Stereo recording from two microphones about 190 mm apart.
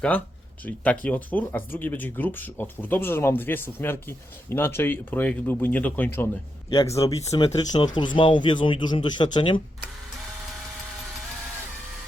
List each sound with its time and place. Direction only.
0.6 s speech: 10° left (ahead or behind)
6.7 s speech: 30° left (ahead or behind)